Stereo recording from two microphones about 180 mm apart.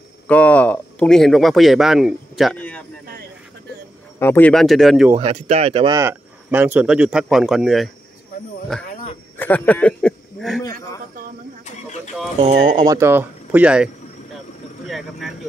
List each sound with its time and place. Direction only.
0.3 s speech: 5° left (ahead or behind)
4.2 s speech: 10° left (ahead or behind)
5.1 s speech: 35° right (ahead or behind)
5.9 s speech: 10° right (ahead or behind)
12.7 s speech: 20° right (ahead or behind)
14.9 s speech: centre (ahead or behind)